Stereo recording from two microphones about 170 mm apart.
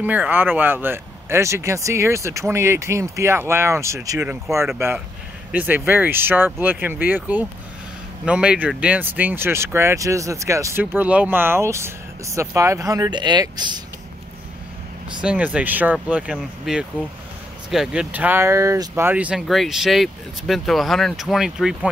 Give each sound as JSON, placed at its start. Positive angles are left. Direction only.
{"t": 0.0, "sound": "speech", "side_deg": -10}
{"t": 15.2, "sound": "speech", "side_deg": -10}